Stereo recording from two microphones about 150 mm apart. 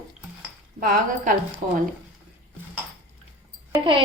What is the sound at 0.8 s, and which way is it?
Speech, 70° right (ahead or behind).